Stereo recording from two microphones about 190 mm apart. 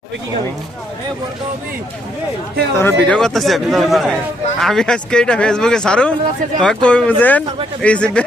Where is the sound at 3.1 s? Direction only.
Centre (ahead or behind).